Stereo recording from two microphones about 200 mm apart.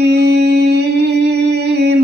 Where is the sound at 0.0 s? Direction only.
55° right (ahead or behind).